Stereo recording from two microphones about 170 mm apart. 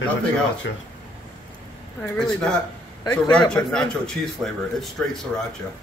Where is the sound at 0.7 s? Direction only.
90° left.